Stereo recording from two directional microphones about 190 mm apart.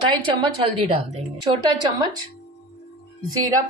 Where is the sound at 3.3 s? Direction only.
20° right (ahead or behind).